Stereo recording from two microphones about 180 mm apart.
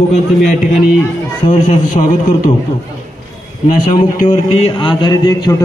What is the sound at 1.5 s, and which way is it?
A man's voice, 45° left (ahead or behind).